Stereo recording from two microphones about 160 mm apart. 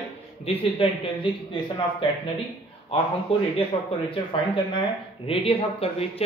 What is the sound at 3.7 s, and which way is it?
Speech, 35° left (ahead or behind).